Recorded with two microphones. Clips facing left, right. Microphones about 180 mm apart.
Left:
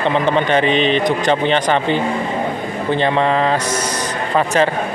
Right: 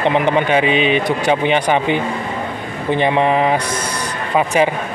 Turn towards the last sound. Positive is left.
turn(degrees=-10)  # may be behind; listen again after turning